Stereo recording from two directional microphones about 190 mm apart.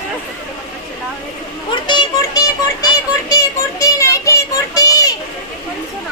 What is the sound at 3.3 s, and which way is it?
Child singing, 15° left (ahead or behind).